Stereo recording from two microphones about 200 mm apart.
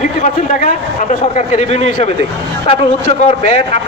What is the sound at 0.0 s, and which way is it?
A man's voice, 40° left (ahead or behind).